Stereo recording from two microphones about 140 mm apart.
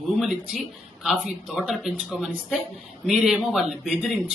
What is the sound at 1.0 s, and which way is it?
Speech, 5° right (ahead or behind).